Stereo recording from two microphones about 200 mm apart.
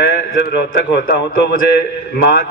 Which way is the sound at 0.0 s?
55° left (ahead or behind).